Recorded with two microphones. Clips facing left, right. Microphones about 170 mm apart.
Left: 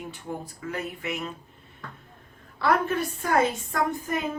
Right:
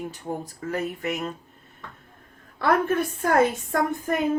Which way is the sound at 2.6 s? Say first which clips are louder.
Right 1 dB; 50° right (ahead or behind).